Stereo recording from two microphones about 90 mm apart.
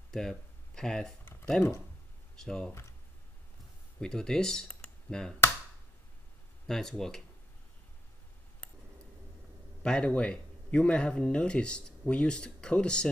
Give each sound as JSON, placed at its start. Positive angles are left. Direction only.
{"t": 0.1, "sound": "speech", "side_deg": 5}
{"t": 1.2, "sound": "typing", "side_deg": 25}
{"t": 2.3, "sound": "speech", "side_deg": 5}
{"t": 4.0, "sound": "speech", "side_deg": 10}
{"t": 6.7, "sound": "speech", "side_deg": 5}
{"t": 9.8, "sound": "speech", "side_deg": 10}